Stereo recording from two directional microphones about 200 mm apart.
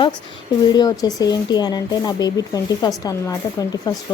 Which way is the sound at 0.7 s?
20° left (ahead or behind).